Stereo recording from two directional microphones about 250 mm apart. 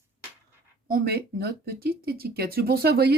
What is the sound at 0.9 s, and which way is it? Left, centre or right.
Speech, right.